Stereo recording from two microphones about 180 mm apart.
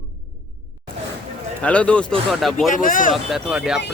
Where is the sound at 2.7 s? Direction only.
50° left (ahead or behind).